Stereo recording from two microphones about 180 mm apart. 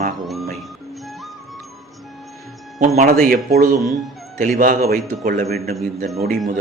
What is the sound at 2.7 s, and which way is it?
Speech, 45° right (ahead or behind).